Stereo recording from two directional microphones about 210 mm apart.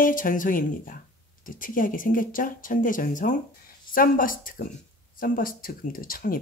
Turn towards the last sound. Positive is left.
turn(degrees=40)  # may be behind; listen again after turning